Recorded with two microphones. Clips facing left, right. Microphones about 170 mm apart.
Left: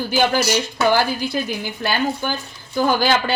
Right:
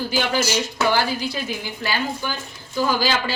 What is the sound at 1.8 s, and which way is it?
A woman's voice, 55° left (ahead or behind).